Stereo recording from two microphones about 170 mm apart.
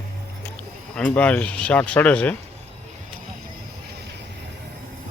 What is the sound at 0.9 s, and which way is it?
Speech, 10° left (ahead or behind).